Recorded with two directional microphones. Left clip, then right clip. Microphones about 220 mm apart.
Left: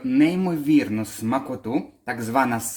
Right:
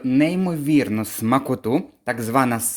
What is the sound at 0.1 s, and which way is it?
Speech, 30° right (ahead or behind).